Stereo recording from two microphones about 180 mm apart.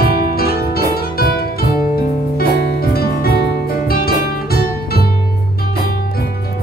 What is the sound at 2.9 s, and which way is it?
Music, 60° left (ahead or behind).